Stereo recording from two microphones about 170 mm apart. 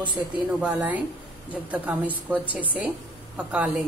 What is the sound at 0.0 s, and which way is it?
Speech, 25° right (ahead or behind).